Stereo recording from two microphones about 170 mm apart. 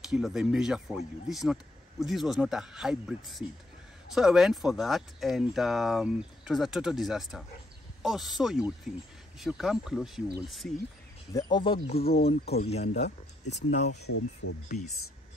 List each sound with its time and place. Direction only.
0.1 s speech: 5° right (ahead or behind)
11.3 s speech: 25° left (ahead or behind); by 13.8 s 40° left (ahead or behind)